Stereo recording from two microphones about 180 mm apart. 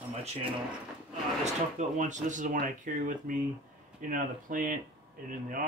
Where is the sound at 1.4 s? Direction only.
40° right (ahead or behind).